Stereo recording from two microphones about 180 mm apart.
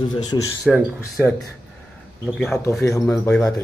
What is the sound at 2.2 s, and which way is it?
Speech, centre (ahead or behind).